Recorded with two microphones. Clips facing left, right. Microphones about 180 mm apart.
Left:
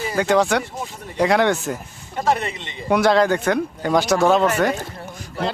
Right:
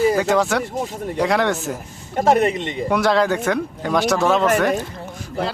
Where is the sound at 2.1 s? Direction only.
45° right (ahead or behind).